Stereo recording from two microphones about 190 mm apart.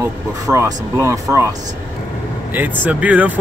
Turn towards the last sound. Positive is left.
turn(degrees=-10)  # may be behind; listen again after turning